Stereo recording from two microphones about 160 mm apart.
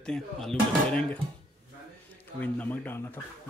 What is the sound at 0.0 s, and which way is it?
Speech, 5° left (ahead or behind).